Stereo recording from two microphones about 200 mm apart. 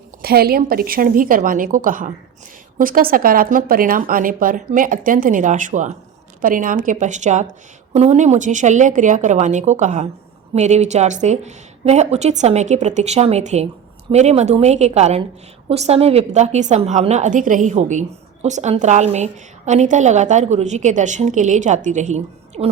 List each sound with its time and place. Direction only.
0.2 s a woman's voice: 50° right (ahead or behind); by 22.7 s 35° right (ahead or behind)